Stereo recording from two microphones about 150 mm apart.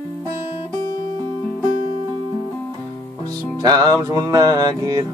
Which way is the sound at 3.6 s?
25° right (ahead or behind).